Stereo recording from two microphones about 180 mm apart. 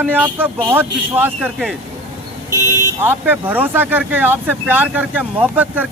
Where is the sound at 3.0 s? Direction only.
10° right (ahead or behind).